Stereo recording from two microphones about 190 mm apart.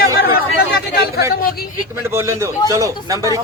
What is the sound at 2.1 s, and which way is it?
A man's voice, 15° right (ahead or behind).